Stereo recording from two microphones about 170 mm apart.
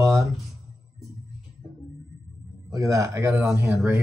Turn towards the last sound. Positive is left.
turn(degrees=-10)  # may be behind; listen again after turning